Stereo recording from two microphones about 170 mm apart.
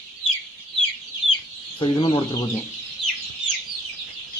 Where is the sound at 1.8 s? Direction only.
30° left (ahead or behind).